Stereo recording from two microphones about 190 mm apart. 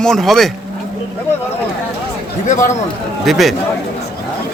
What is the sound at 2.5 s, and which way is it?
Speech, 40° left (ahead or behind).